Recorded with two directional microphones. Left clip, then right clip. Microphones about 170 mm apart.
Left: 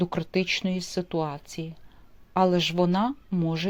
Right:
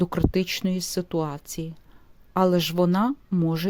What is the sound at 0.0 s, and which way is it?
Speech, 45° right (ahead or behind).